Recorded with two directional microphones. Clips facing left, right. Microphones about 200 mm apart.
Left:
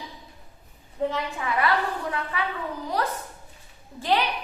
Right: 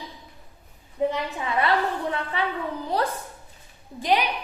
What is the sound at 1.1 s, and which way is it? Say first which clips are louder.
A woman's voice: right 1 dB; 25° right (ahead or behind).